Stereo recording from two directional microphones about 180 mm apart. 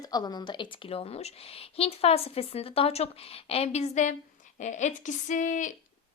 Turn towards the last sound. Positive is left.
turn(degrees=45)  # may be behind; listen again after turning